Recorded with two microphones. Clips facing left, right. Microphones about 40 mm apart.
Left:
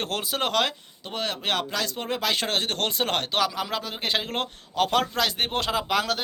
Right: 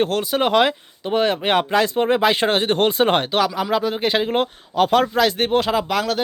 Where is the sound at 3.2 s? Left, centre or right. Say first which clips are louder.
Right 6 dB; centre.